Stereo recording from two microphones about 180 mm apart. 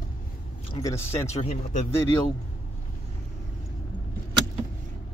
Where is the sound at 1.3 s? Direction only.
35° left (ahead or behind).